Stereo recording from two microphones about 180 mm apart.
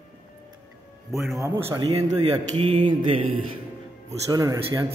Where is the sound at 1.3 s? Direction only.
15° right (ahead or behind).